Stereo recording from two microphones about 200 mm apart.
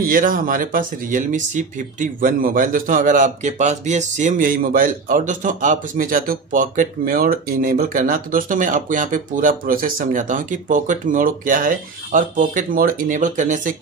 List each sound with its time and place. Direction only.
0.0 s speech: 45° right (ahead or behind)